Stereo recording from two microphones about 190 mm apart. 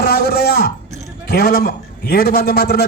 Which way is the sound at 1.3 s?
50° left (ahead or behind).